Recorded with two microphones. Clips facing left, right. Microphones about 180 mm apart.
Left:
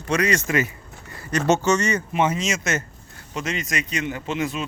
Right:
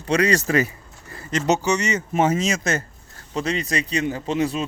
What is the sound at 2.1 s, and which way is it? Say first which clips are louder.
Speech: right 5 dB; 40° right (ahead or behind).